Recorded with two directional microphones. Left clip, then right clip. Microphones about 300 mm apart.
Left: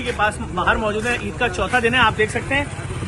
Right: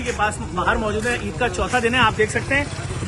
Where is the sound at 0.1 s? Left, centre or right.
Centre.